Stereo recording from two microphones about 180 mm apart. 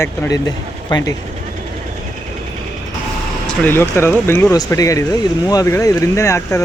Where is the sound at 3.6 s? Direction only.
10° left (ahead or behind).